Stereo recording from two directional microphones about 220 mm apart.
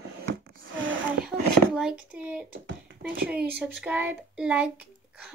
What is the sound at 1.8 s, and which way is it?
Speech, 5° right (ahead or behind).